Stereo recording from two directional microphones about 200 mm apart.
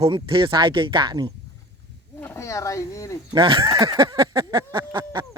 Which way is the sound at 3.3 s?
25° right (ahead or behind).